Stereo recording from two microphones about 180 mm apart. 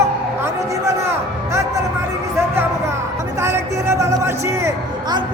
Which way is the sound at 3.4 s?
15° right (ahead or behind).